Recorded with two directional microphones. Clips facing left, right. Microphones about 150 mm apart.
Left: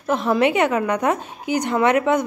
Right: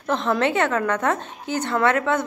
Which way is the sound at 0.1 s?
10° left (ahead or behind).